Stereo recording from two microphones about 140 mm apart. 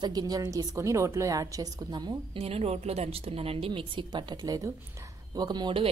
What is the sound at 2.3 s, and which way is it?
A woman's voice, 45° right (ahead or behind).